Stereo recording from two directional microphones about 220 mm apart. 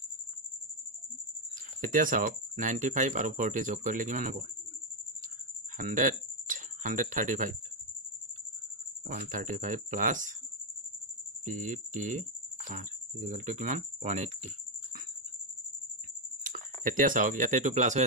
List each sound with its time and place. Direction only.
1.8 s speech: 40° right (ahead or behind)
5.8 s speech: 35° right (ahead or behind)
9.0 s speech: 35° right (ahead or behind)
11.4 s speech: 35° right (ahead or behind)
16.4 s speech: 40° right (ahead or behind)